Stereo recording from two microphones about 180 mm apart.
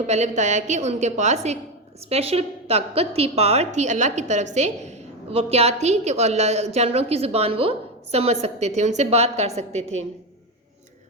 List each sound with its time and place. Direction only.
0.1 s a woman's voice: 40° right (ahead or behind)